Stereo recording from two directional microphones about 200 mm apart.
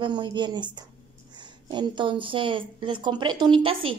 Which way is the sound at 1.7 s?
25° right (ahead or behind).